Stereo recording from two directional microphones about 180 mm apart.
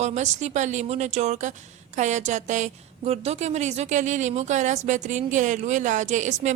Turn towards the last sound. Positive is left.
turn(degrees=-40)  # may be behind; listen again after turning